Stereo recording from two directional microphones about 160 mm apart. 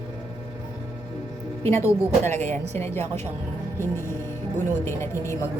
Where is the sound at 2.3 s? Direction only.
45° right (ahead or behind).